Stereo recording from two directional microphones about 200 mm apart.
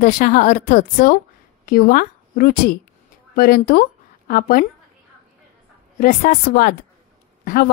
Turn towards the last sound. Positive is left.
turn(degrees=45)  # may be behind; listen again after turning